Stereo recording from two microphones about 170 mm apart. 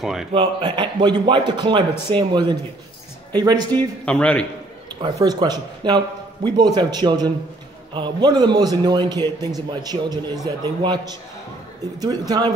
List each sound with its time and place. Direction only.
0.0 s a man's voice: centre (ahead or behind)
0.3 s a man's voice: 25° right (ahead or behind)
3.7 s a man's voice: 5° left (ahead or behind)
5.0 s a man's voice: 25° right (ahead or behind)